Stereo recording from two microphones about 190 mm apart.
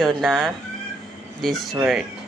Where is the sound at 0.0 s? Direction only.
Centre (ahead or behind).